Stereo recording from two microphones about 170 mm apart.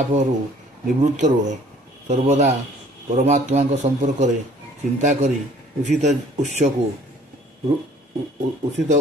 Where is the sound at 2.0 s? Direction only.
45° right (ahead or behind).